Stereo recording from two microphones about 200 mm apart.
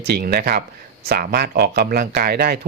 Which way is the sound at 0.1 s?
50° right (ahead or behind).